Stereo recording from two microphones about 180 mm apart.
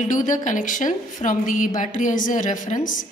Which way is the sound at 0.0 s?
45° left (ahead or behind).